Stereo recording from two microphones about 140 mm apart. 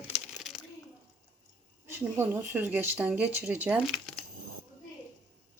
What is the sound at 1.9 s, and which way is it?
Speech, 15° right (ahead or behind).